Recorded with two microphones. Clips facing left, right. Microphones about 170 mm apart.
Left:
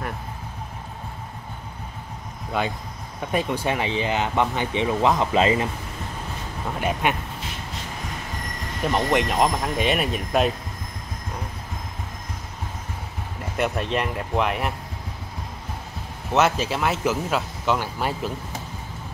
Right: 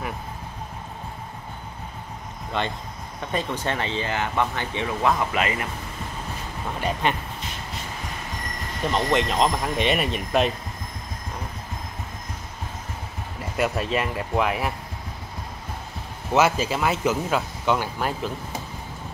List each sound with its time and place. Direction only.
2.6 s speech: 5° left (ahead or behind); by 5.7 s 25° left (ahead or behind)
6.8 s speech: 10° left (ahead or behind)
8.9 s speech: 10° left (ahead or behind)
13.6 s speech: 5° right (ahead or behind)
16.3 s speech: centre (ahead or behind)